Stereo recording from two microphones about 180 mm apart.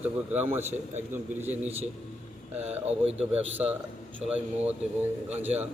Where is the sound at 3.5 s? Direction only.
10° right (ahead or behind).